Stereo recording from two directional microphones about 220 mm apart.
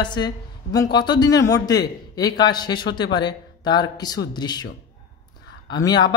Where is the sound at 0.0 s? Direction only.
20° left (ahead or behind).